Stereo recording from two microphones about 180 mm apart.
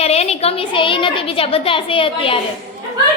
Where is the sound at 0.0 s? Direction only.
35° left (ahead or behind).